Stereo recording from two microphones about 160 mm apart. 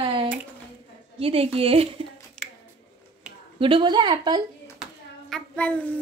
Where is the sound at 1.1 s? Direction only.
35° right (ahead or behind).